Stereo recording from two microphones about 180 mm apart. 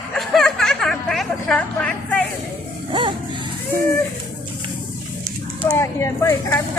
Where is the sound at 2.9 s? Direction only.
25° right (ahead or behind).